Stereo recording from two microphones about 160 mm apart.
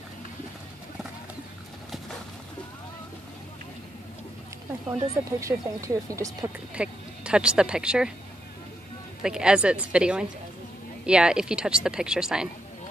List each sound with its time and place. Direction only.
5.1 s speech: 20° right (ahead or behind)
6.7 s speech: 5° right (ahead or behind)
9.2 s speech: 5° right (ahead or behind)